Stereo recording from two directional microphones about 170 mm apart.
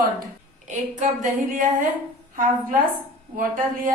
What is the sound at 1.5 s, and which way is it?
Speech, 50° right (ahead or behind).